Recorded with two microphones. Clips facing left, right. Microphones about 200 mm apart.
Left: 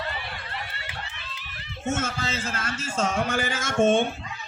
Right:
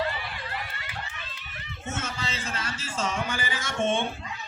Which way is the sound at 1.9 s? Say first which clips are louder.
Left 6 dB; 45° left (ahead or behind).